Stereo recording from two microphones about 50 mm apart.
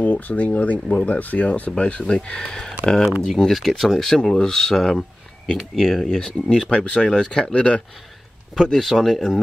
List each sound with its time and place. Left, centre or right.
0.0 s speech: left; by 3.1 s centre
3.3 s speech: centre
4.0 s speech: centre
8.5 s speech: centre